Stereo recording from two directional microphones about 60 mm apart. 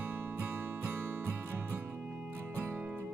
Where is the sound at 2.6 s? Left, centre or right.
Right.